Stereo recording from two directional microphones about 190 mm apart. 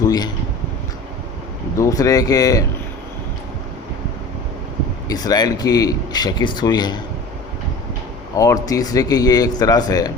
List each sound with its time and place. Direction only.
0.0 s a sound: 20° left (ahead or behind)
1.7 s speech: 15° left (ahead or behind)
5.0 s speech: 20° left (ahead or behind)
8.4 s speech: 20° left (ahead or behind)